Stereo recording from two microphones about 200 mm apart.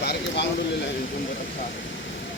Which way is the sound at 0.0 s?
60° left (ahead or behind).